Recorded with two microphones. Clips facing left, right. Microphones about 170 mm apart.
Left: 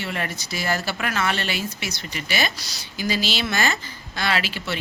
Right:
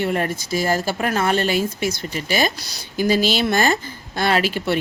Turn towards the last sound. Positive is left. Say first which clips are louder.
# right 7 dB
turn(degrees=-50)  # may be behind; listen again after turning